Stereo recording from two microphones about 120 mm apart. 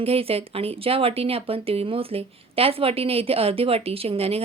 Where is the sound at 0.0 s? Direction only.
55° right (ahead or behind).